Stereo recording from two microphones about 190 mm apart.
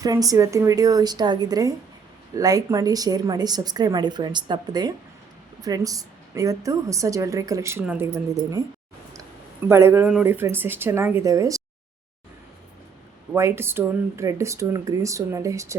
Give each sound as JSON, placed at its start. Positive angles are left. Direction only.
{"t": 0.0, "sound": "a woman's voice", "side_deg": -20}
{"t": 9.6, "sound": "a woman's voice", "side_deg": -15}
{"t": 13.3, "sound": "a woman's voice", "side_deg": -15}